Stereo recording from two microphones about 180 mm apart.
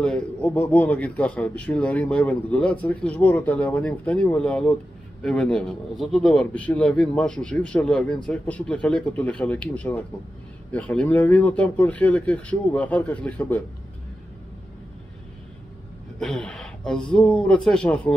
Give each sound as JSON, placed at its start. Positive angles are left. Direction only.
{"t": 0.0, "sound": "a man's voice", "side_deg": 5}
{"t": 16.2, "sound": "speech", "side_deg": 5}